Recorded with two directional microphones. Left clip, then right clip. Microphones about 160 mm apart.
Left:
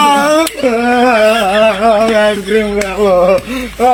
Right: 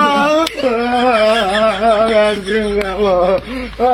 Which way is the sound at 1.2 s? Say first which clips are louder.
Left 3 dB; centre (ahead or behind).